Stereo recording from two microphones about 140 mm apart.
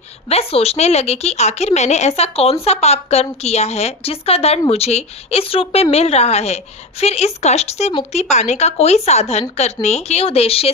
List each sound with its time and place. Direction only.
0.3 s a woman's voice: 45° left (ahead or behind)